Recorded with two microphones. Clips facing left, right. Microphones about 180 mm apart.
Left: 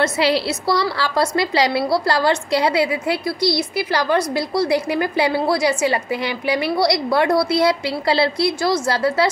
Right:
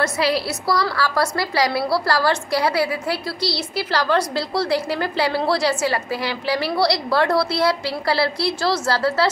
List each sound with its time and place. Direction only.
0.0 s a woman's voice: 25° left (ahead or behind)